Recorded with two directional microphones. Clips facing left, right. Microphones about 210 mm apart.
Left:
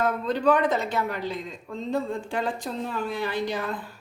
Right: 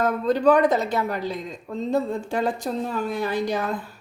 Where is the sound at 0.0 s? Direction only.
40° right (ahead or behind).